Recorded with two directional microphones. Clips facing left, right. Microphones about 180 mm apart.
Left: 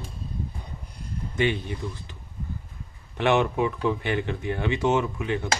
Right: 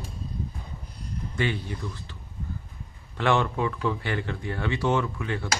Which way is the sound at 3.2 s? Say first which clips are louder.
Left 2 dB; 20° left (ahead or behind).